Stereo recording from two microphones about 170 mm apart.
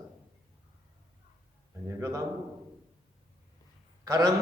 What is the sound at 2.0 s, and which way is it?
Speech, 20° right (ahead or behind).